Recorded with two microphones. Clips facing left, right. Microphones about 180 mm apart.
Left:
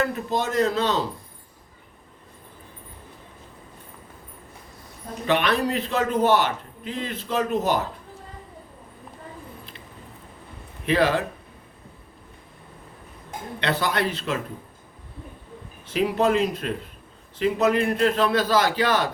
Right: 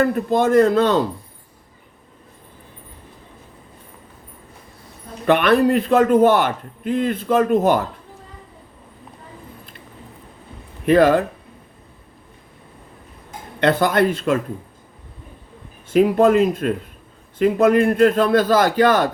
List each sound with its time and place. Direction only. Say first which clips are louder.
0.0 s a man's voice: right 8 dB; 55° right (ahead or behind)
5.2 s a man's voice: right 7 dB; 55° right (ahead or behind)
10.8 s a man's voice: right 8 dB; 50° right (ahead or behind)
13.6 s a man's voice: right 8 dB; 50° right (ahead or behind)
15.9 s a man's voice: right 7 dB; 50° right (ahead or behind)